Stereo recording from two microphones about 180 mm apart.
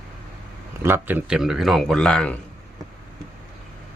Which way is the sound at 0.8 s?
15° right (ahead or behind).